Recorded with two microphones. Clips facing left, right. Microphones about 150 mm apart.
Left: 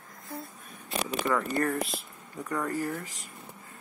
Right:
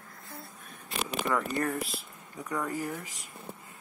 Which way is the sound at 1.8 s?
Centre (ahead or behind).